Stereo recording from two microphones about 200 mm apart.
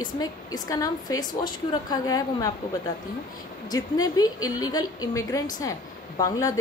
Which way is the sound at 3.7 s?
20° left (ahead or behind).